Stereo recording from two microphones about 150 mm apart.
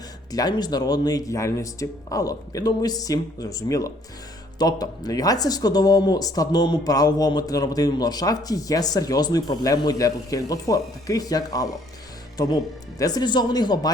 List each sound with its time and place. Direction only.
0.3 s speech: 25° left (ahead or behind)
13.0 s speech: 25° left (ahead or behind)